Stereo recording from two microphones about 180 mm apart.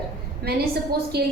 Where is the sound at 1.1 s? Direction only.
65° right (ahead or behind).